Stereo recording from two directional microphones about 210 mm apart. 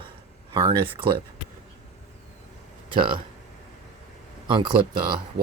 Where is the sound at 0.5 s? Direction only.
25° right (ahead or behind).